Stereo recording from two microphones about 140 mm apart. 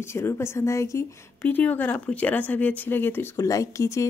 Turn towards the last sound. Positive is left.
turn(degrees=20)  # may be behind; listen again after turning